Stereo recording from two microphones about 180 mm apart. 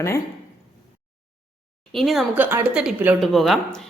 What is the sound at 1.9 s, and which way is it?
Speech, centre (ahead or behind).